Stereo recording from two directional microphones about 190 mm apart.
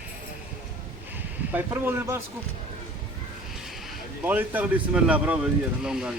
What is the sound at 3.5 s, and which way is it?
A man's voice, centre (ahead or behind).